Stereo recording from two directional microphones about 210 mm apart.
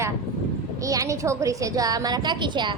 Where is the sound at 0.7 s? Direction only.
15° right (ahead or behind).